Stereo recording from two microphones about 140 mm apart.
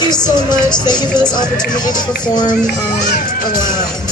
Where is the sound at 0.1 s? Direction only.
30° left (ahead or behind).